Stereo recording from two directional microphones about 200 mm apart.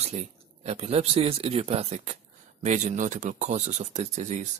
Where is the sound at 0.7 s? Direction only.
30° right (ahead or behind).